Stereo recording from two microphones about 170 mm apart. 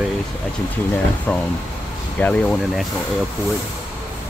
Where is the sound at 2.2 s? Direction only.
5° left (ahead or behind).